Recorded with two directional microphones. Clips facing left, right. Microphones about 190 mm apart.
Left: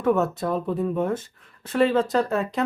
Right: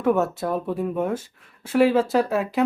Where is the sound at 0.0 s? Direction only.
5° right (ahead or behind).